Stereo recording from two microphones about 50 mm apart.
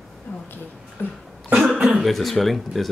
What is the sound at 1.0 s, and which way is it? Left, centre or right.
Cough, left.